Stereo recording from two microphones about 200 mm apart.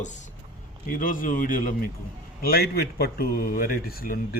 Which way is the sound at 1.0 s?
45° left (ahead or behind).